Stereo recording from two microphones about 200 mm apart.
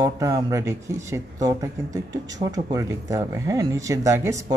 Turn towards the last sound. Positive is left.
turn(degrees=-15)  # may be behind; listen again after turning